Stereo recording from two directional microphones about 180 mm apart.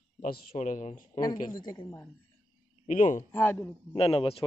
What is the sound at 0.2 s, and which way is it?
Speech, 50° left (ahead or behind).